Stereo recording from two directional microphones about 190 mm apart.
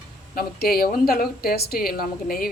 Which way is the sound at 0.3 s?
50° left (ahead or behind).